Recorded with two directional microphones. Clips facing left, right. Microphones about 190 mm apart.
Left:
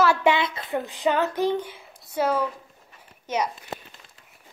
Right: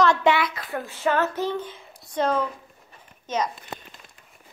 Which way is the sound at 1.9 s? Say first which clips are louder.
Even; 5° left (ahead or behind).